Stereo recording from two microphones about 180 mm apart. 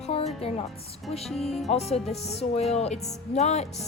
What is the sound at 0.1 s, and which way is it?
Music, 35° left (ahead or behind).